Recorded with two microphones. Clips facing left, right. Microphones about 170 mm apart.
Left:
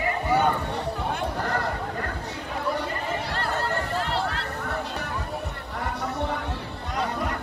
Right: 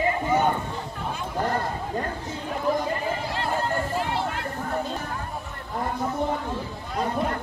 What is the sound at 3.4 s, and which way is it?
Chatter, 15° right (ahead or behind).